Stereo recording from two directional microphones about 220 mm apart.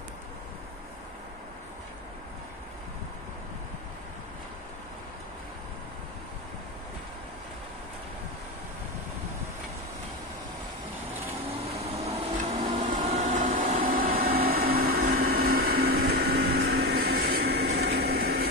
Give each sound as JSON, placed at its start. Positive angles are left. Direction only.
{"t": 11.6, "sound": "vehicle", "side_deg": -30}
{"t": 12.4, "sound": "vacuum cleaner", "side_deg": -30}
{"t": 13.8, "sound": "a sound", "side_deg": -40}